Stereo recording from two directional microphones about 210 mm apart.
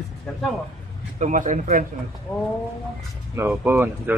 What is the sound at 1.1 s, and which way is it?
Speech, 35° right (ahead or behind).